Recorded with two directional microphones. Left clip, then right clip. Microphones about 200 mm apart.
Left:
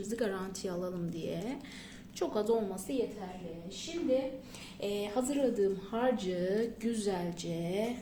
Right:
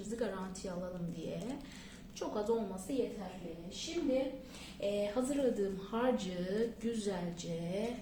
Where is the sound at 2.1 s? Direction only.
35° left (ahead or behind).